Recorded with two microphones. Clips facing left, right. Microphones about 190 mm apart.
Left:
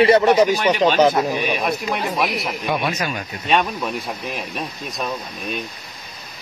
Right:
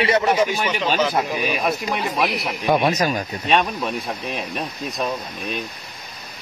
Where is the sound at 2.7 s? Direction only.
40° right (ahead or behind).